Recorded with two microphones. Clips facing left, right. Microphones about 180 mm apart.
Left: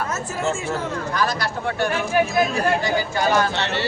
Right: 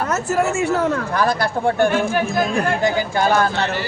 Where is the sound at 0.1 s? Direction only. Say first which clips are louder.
Right 9 dB; 70° right (ahead or behind).